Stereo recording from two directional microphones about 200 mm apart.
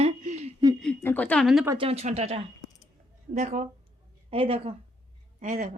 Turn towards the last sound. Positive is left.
turn(degrees=-40)  # may be behind; listen again after turning